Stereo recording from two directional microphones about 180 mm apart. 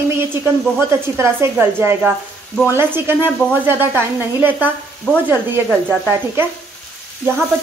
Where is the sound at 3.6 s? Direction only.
10° right (ahead or behind).